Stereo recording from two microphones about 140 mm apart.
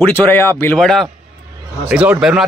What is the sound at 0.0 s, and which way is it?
Speech, 15° left (ahead or behind).